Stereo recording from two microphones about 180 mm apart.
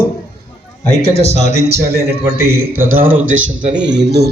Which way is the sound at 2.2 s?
15° right (ahead or behind).